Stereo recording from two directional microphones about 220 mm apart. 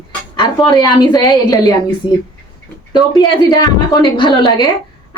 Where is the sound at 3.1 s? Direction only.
20° left (ahead or behind).